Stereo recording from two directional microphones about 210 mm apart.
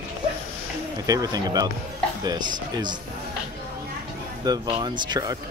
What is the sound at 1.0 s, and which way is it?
Speech, 15° right (ahead or behind).